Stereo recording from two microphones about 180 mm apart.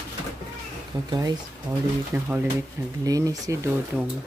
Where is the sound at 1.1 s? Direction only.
20° right (ahead or behind).